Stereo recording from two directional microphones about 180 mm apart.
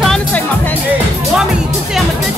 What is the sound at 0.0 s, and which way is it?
Music, 5° left (ahead or behind).